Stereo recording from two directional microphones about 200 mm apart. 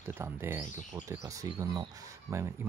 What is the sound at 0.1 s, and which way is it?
Speech, 10° right (ahead or behind).